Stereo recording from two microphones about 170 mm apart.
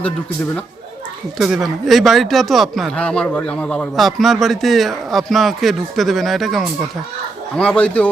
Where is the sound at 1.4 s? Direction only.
Centre (ahead or behind).